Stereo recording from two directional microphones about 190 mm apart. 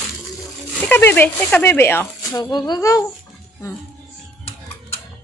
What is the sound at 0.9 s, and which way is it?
Speech, 10° left (ahead or behind).